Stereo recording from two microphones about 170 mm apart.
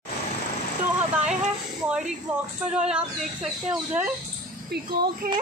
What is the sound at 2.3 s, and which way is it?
Speech, 10° right (ahead or behind).